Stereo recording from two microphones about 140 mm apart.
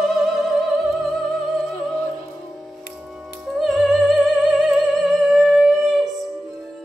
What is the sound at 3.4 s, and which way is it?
Music, centre (ahead or behind).